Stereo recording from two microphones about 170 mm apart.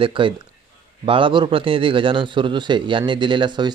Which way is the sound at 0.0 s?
30° right (ahead or behind).